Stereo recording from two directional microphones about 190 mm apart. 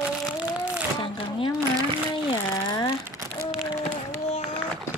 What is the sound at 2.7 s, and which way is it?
Speech, 20° left (ahead or behind).